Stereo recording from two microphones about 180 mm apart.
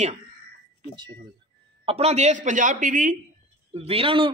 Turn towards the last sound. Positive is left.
turn(degrees=-30)  # may be behind; listen again after turning